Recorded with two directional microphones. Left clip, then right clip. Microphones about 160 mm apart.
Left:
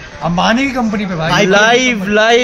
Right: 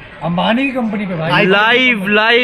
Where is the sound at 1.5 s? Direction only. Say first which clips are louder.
Left 2 dB; 5° left (ahead or behind).